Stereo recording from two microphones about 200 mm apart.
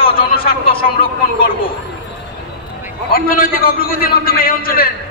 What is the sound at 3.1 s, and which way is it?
A man's voice, 45° left (ahead or behind).